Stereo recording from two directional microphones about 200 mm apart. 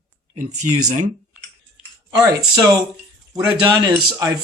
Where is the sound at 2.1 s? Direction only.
20° right (ahead or behind).